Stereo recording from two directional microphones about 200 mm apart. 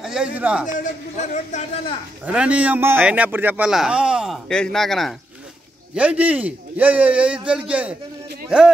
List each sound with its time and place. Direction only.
0.0 s speech: 5° right (ahead or behind)
1.3 s speech: 35° left (ahead or behind)
2.2 s a man's voice: 5° right (ahead or behind)